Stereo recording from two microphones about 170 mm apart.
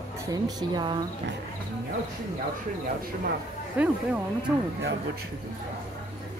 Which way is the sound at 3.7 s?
10° right (ahead or behind).